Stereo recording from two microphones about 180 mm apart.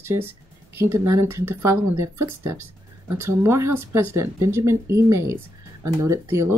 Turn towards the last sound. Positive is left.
turn(degrees=-15)  # may be behind; listen again after turning